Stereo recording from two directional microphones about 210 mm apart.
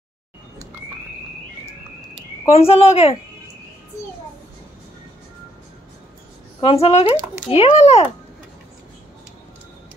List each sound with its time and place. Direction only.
2.4 s a woman's voice: 30° left (ahead or behind)
6.6 s a woman's voice: 30° left (ahead or behind)